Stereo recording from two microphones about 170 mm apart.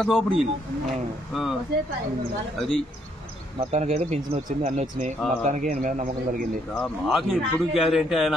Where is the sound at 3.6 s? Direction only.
40° right (ahead or behind).